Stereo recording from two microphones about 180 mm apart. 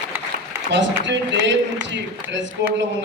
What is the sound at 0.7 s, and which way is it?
A man's voice, 80° right.